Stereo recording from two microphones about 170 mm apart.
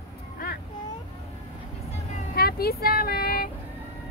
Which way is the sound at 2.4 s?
65° left (ahead or behind).